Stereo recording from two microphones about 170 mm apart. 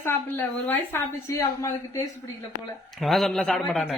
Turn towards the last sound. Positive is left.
turn(degrees=0)  # may be behind; listen again after turning